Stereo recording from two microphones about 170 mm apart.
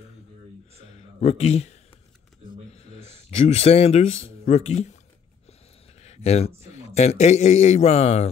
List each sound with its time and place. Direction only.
0.7 s a sound: 40° left (ahead or behind)
2.7 s speech: 40° left (ahead or behind)
5.9 s a man's voice: 40° left (ahead or behind)